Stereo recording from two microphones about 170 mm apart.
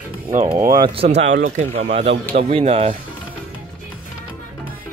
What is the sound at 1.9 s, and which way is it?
Speech, 35° right (ahead or behind).